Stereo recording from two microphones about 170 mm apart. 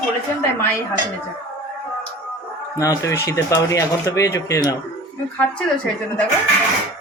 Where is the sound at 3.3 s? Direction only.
20° left (ahead or behind).